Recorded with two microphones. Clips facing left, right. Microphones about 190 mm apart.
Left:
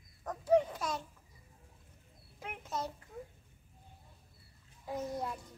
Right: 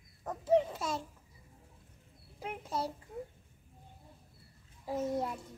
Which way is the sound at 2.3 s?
30° right (ahead or behind).